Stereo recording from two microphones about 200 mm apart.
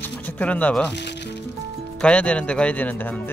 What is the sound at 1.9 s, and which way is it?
Speech, 5° left (ahead or behind).